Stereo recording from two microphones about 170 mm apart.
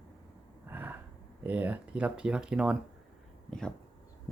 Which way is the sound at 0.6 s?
10° right (ahead or behind).